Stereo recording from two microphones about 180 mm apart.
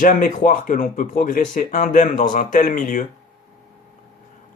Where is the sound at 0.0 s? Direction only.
50° left (ahead or behind).